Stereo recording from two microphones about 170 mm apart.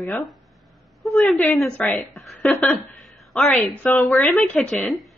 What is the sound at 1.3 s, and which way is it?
A woman's voice, 5° left (ahead or behind).